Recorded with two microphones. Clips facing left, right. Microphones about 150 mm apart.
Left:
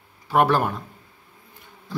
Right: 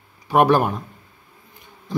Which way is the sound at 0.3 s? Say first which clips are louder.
Right 3 dB; 15° right (ahead or behind).